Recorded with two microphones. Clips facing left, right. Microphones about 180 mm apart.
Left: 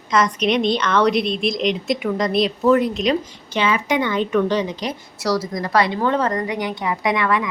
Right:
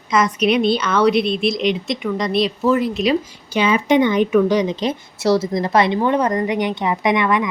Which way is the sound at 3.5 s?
20° right (ahead or behind).